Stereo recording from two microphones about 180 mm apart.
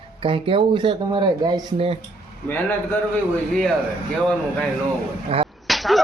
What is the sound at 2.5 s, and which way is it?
Speech, 10° left (ahead or behind).